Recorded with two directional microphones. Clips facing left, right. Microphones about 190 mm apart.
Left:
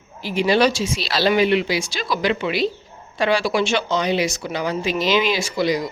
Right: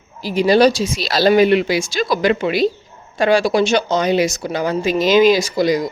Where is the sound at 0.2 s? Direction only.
40° right (ahead or behind).